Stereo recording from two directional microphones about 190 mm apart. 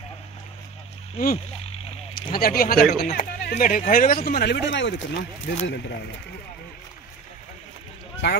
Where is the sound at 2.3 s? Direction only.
50° left (ahead or behind); by 4.9 s 70° left (ahead or behind).